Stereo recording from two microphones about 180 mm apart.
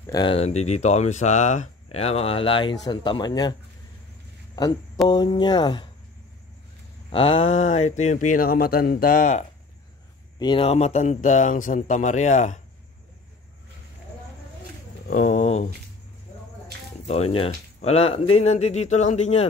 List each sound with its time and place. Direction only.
0.0 s speech: 20° left (ahead or behind)
5.0 s speech: 25° left (ahead or behind)
7.1 s speech: 30° left (ahead or behind); by 9.4 s 50° left (ahead or behind)
10.4 s speech: 30° left (ahead or behind)
15.0 s speech: 45° left (ahead or behind)
17.0 s speech: 35° left (ahead or behind)